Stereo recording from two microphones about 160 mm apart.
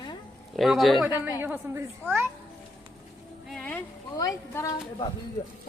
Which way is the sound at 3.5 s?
10° left (ahead or behind).